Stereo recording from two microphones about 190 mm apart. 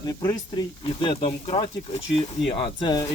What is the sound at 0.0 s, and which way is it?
Speech, 20° left (ahead or behind).